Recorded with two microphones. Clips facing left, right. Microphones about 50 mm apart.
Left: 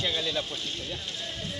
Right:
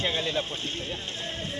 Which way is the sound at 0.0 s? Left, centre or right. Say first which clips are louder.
Right 2 dB; right.